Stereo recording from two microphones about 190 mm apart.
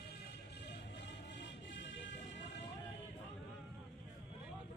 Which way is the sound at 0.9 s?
65° left (ahead or behind).